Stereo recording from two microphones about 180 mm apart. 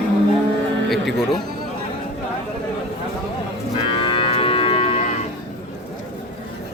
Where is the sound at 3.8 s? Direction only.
30° left (ahead or behind).